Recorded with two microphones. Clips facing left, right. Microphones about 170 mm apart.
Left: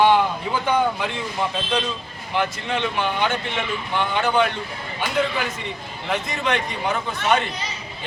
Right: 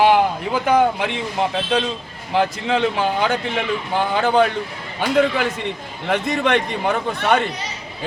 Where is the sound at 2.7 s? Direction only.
35° right (ahead or behind).